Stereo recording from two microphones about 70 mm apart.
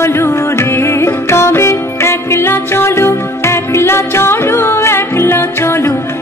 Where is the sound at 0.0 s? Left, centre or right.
Left.